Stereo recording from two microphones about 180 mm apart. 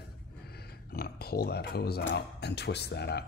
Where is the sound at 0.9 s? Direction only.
55° left (ahead or behind).